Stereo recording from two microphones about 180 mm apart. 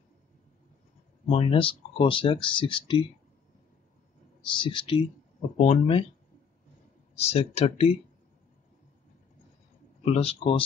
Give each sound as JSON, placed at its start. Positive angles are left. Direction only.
{"t": 1.2, "sound": "speech", "side_deg": 30}
{"t": 4.5, "sound": "speech", "side_deg": 25}
{"t": 7.2, "sound": "speech", "side_deg": 35}
{"t": 10.0, "sound": "speech", "side_deg": 35}